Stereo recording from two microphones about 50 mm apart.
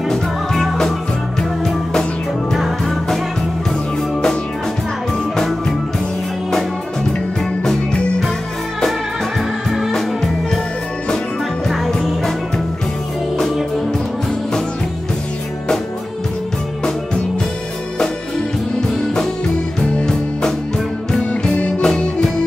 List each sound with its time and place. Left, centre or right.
0.1 s music: centre
5.3 s music: centre
7.6 s music: centre
9.7 s music: centre
9.9 s music: centre
11.7 s music: centre
19.8 s music: centre
21.1 s music: left
21.8 s music: centre